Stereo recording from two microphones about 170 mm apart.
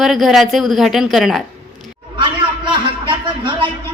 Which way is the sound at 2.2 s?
30° right (ahead or behind).